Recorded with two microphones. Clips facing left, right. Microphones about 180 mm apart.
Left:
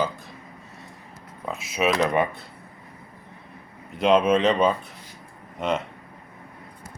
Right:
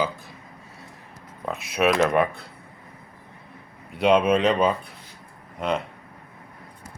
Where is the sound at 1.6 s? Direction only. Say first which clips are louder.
Right 2 dB; 60° right (ahead or behind).